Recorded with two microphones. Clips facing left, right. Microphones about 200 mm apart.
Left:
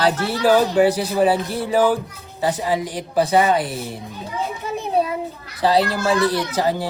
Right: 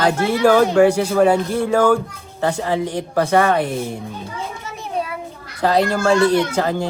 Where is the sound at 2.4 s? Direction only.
15° left (ahead or behind).